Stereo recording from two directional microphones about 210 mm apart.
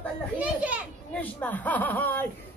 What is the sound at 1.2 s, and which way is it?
Speech, 10° left (ahead or behind).